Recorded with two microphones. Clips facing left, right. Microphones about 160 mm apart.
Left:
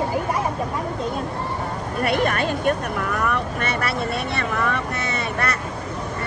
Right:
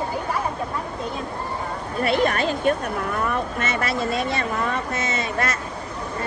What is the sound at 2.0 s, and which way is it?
Speech, 50° left (ahead or behind).